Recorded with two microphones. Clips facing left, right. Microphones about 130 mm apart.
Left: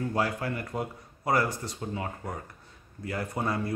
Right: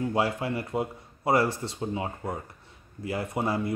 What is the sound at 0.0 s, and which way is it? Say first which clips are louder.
Speech: right 2 dB; 25° right (ahead or behind).